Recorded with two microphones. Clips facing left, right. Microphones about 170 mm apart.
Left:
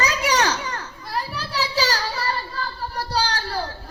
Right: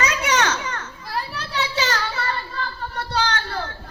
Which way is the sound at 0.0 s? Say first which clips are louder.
Even; 35° left (ahead or behind).